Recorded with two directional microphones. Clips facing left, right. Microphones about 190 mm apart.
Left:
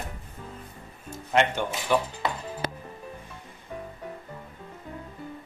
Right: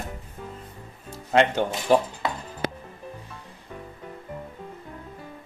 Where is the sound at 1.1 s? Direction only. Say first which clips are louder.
Right 3 dB; 35° right (ahead or behind).